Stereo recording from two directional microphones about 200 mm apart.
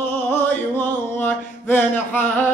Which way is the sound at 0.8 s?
10° left (ahead or behind).